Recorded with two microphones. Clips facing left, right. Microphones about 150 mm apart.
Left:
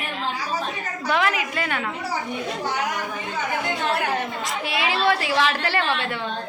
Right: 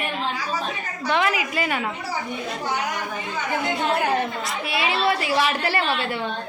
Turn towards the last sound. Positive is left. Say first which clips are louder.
# even
turn(degrees=-10)  # may be behind; listen again after turning